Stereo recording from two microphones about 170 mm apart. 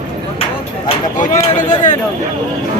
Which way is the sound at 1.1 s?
50° left (ahead or behind).